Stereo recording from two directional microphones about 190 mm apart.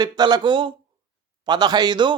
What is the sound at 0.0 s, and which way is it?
A man's voice, 20° right (ahead or behind).